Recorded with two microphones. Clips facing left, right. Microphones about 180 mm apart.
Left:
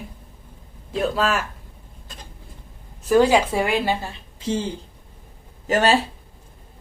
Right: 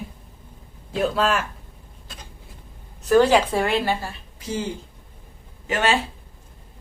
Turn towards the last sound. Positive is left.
turn(degrees=40)  # may be behind; listen again after turning